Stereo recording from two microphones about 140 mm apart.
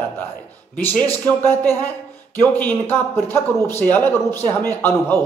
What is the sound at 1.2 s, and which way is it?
A man's voice, 15° left (ahead or behind).